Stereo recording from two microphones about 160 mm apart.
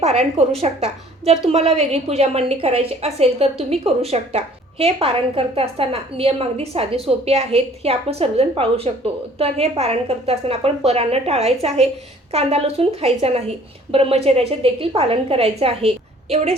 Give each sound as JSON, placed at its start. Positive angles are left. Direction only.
{"t": 0.0, "sound": "a woman's voice", "side_deg": -40}